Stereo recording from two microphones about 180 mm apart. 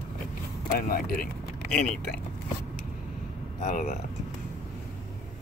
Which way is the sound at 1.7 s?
5° left (ahead or behind).